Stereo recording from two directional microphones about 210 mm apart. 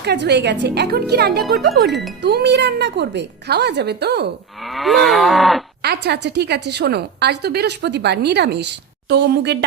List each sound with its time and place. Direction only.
0.0 s a woman's voice: 55° right (ahead or behind)
4.6 s moo: centre (ahead or behind)
5.8 s a woman's voice: 50° right (ahead or behind)